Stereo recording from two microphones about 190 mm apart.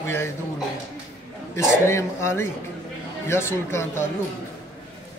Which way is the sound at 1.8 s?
15° left (ahead or behind).